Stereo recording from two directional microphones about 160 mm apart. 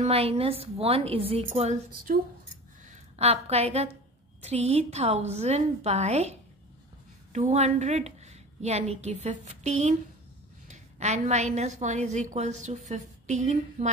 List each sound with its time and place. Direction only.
0.0 s a woman's voice: 40° right (ahead or behind)
2.1 s speech: 60° right (ahead or behind)
2.8 s a woman's voice: 45° right (ahead or behind)
7.3 s a woman's voice: 45° right (ahead or behind)